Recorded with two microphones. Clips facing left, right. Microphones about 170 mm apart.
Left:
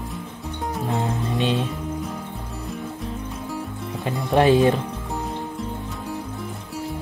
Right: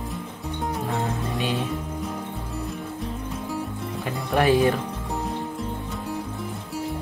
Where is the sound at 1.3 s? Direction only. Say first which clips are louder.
Left 6 dB; 25° left (ahead or behind).